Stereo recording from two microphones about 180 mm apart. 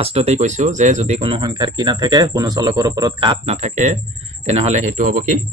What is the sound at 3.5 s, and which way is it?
A man's voice, 40° right (ahead or behind).